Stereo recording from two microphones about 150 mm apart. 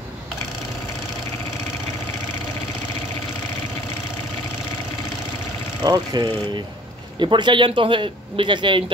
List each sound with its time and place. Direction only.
5.8 s a man's voice: 30° right (ahead or behind)